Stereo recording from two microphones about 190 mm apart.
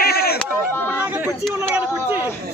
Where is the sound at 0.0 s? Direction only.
55° left (ahead or behind).